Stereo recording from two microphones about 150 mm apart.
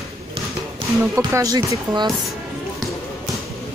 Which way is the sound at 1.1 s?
20° right (ahead or behind).